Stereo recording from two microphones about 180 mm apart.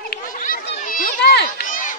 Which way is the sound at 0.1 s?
50° left (ahead or behind).